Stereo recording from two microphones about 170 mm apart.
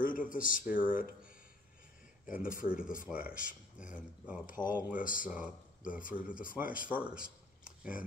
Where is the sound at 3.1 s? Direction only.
5° right (ahead or behind).